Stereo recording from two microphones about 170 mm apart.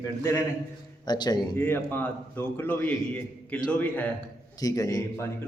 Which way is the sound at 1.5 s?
10° left (ahead or behind).